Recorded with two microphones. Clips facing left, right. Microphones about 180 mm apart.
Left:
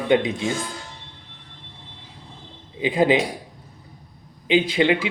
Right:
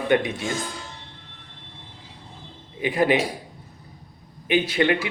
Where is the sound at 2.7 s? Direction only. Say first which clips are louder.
Left 2 dB; 20° left (ahead or behind).